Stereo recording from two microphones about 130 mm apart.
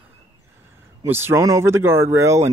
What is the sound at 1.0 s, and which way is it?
Speech, 20° right (ahead or behind).